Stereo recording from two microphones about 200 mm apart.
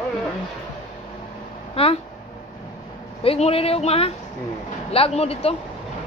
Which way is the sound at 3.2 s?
30° left (ahead or behind).